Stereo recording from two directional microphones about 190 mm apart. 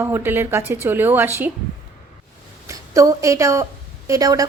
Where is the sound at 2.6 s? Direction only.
15° right (ahead or behind).